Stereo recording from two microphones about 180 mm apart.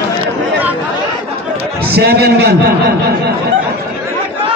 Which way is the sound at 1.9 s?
60° right (ahead or behind).